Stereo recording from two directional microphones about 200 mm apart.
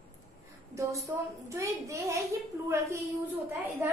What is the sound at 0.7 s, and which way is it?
A woman's voice, 15° right (ahead or behind).